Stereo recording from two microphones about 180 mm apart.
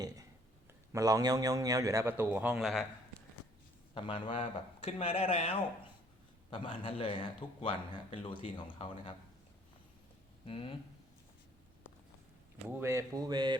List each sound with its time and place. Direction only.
0.9 s a man's voice: 20° right (ahead or behind); by 3.2 s centre (ahead or behind)
3.9 s speech: 35° left (ahead or behind)
10.4 s speech: 30° left (ahead or behind)
12.6 s speech: 15° right (ahead or behind)